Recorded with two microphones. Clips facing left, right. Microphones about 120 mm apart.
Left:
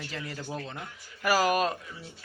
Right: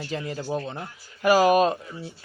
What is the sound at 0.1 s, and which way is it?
Speech, 20° right (ahead or behind).